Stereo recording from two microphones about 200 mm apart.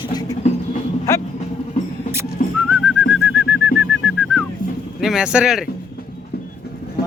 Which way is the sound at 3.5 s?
10° right (ahead or behind).